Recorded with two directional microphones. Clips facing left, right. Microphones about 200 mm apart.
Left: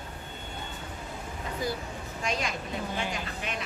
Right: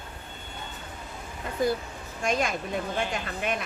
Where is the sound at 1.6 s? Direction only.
55° right (ahead or behind).